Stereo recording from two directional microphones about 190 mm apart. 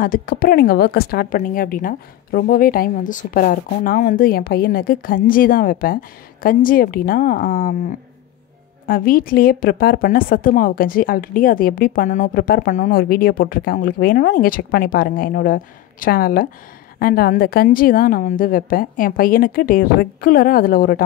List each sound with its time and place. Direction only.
0.0 s a woman's voice: 50° left (ahead or behind)
8.8 s a woman's voice: 50° left (ahead or behind)